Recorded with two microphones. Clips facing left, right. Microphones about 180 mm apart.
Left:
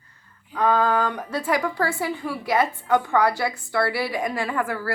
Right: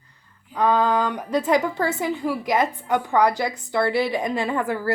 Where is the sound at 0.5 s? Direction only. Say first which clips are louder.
Right 1 dB; 15° right (ahead or behind).